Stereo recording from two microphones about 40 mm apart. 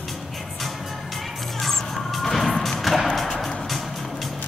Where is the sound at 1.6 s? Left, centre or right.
Centre.